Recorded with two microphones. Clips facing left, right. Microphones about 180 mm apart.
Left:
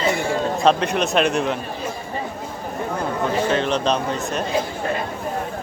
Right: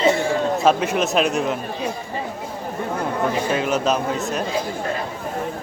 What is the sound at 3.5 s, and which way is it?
Speech, 5° right (ahead or behind).